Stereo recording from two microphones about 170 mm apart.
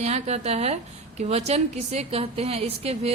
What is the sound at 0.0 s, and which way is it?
A woman's voice, 40° right (ahead or behind).